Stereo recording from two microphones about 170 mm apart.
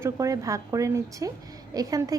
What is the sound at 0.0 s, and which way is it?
A woman's voice, 20° right (ahead or behind).